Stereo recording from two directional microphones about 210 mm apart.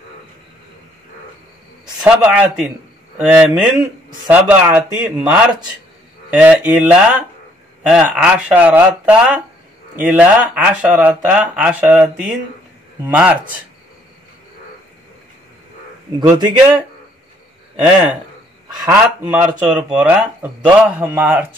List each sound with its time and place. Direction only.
2.0 s speech: 5° right (ahead or behind)
16.2 s speech: 20° right (ahead or behind)
18.9 s speech: 10° right (ahead or behind)